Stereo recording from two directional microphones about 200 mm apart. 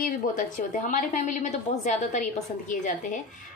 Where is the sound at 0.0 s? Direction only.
40° left (ahead or behind).